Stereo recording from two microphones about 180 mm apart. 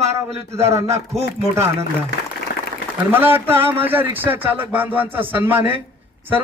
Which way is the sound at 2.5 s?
60° left (ahead or behind).